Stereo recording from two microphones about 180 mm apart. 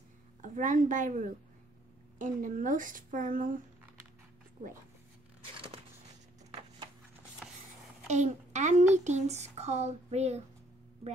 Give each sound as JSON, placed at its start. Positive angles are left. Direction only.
{"t": 0.4, "sound": "a woman's voice", "side_deg": -45}
{"t": 7.4, "sound": "vehicle", "side_deg": -5}
{"t": 8.1, "sound": "speech", "side_deg": -40}